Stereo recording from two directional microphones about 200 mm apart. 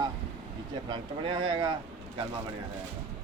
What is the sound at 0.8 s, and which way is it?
Speech, 25° right (ahead or behind).